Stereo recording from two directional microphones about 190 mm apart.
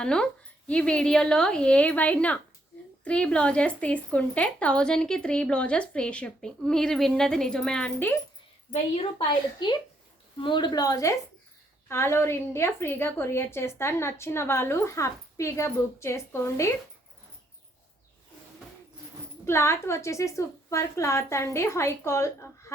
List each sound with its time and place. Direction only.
0.0 s speech: 5° left (ahead or behind)
8.7 s a woman's voice: 30° left (ahead or behind)
19.5 s a woman's voice: 15° left (ahead or behind)